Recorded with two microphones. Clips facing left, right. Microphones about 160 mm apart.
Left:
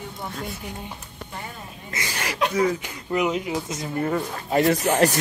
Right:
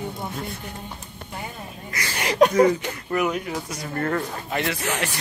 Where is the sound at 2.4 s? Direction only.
45° right (ahead or behind).